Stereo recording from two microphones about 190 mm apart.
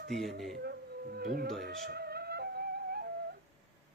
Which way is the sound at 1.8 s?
55° right (ahead or behind).